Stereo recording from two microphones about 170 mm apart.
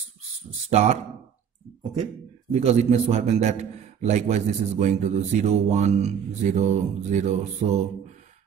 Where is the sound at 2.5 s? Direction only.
40° right (ahead or behind).